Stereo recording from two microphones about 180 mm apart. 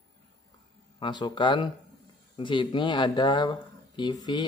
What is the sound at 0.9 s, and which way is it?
Speech, 25° left (ahead or behind).